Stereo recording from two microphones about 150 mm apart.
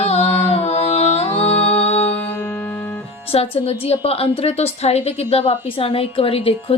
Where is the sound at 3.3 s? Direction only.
45° left (ahead or behind).